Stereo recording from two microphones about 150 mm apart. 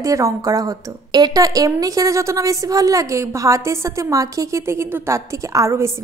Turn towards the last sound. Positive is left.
turn(degrees=-20)  # may be behind; listen again after turning